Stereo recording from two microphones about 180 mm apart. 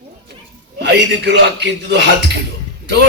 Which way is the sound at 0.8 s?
70° right (ahead or behind).